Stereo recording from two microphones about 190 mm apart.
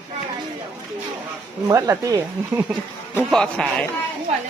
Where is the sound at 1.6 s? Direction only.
15° right (ahead or behind).